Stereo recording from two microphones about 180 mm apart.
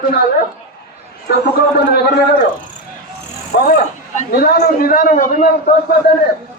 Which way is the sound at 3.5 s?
60° left (ahead or behind).